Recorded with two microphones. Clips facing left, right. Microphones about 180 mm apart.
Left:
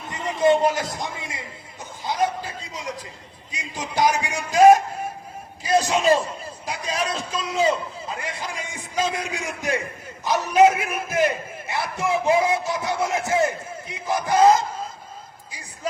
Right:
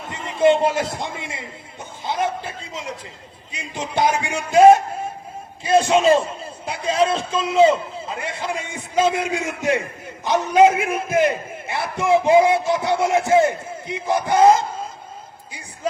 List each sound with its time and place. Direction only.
0.3 s a man's voice: 25° right (ahead or behind)